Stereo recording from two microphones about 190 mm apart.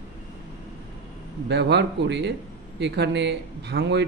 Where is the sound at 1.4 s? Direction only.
65° right (ahead or behind).